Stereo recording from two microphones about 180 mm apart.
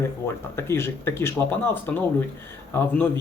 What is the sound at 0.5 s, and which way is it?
Speech, 15° left (ahead or behind).